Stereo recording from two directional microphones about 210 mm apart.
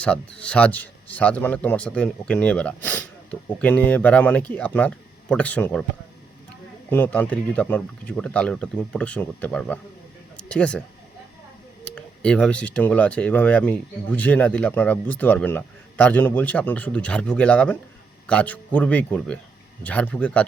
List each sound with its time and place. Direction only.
0.0 s speech: 5° left (ahead or behind)
6.9 s speech: 10° left (ahead or behind)
11.9 s speech: 5° left (ahead or behind)